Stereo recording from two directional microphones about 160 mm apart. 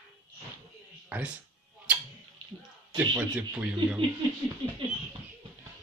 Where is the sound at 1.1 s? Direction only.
10° right (ahead or behind).